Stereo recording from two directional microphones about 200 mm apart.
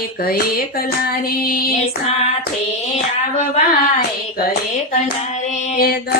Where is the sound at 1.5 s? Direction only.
50° left (ahead or behind).